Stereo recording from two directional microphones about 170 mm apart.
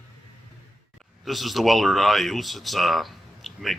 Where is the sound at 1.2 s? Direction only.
Centre (ahead or behind).